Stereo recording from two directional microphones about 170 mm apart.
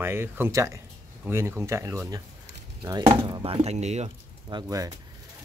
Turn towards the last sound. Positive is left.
turn(degrees=-20)  # may be behind; listen again after turning